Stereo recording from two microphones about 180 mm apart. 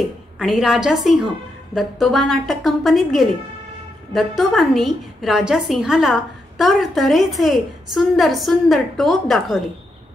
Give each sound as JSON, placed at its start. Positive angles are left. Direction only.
{"t": 0.4, "sound": "a woman's voice", "side_deg": 0}